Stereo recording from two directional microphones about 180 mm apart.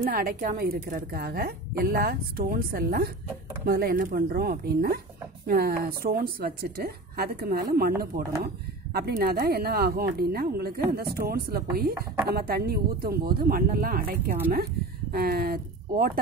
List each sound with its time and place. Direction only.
0.0 s a woman's voice: 50° right (ahead or behind)
8.9 s speech: 60° right (ahead or behind)